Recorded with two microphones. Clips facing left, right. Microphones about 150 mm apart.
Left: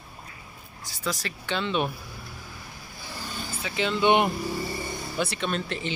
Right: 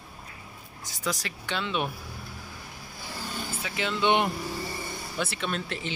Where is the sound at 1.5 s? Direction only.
5° right (ahead or behind).